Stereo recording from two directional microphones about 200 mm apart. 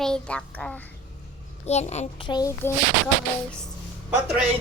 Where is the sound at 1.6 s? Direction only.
35° left (ahead or behind).